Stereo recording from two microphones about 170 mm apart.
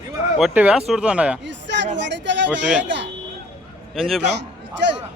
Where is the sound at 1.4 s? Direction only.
90° right.